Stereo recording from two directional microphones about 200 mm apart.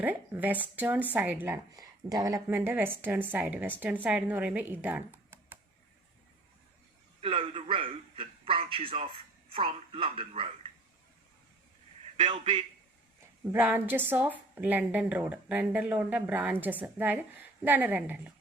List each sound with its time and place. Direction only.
0.0 s speech: 10° right (ahead or behind)
7.2 s a man's voice: 30° right (ahead or behind)
12.1 s a man's voice: 25° right (ahead or behind)
13.5 s speech: 10° right (ahead or behind)